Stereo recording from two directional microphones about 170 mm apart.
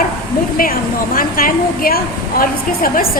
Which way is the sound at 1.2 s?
60° left (ahead or behind).